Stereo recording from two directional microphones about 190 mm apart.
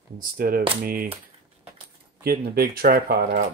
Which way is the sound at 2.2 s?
55° right (ahead or behind).